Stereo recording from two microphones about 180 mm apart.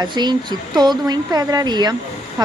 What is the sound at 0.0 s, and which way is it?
Speech, 25° right (ahead or behind).